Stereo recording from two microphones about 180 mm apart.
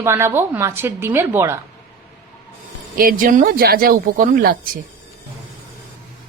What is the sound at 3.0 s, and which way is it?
Speech, 55° right (ahead or behind).